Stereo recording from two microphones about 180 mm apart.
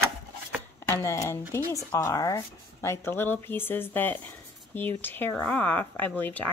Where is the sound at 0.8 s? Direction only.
15° left (ahead or behind).